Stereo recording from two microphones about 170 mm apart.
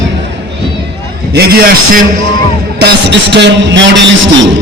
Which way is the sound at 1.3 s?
65° right (ahead or behind).